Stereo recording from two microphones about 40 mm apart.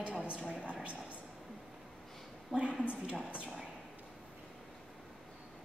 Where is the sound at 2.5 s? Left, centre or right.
Right.